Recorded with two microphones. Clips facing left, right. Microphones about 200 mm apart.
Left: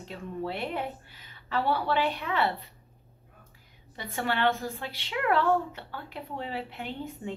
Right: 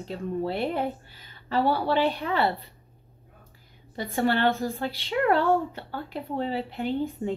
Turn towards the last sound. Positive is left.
turn(degrees=-35)  # may be behind; listen again after turning